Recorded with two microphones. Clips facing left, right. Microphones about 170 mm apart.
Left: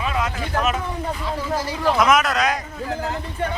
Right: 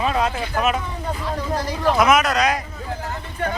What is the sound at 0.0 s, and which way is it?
Vehicle, 35° right (ahead or behind).